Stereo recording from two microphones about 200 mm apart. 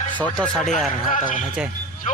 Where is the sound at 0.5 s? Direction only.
Centre (ahead or behind).